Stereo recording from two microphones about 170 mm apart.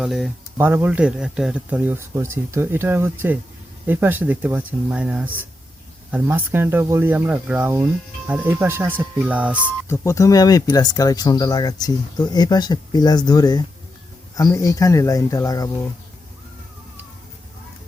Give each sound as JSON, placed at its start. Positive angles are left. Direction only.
{"t": 0.0, "sound": "speech", "side_deg": 0}
{"t": 0.5, "sound": "speech", "side_deg": -10}
{"t": 9.9, "sound": "speech", "side_deg": 15}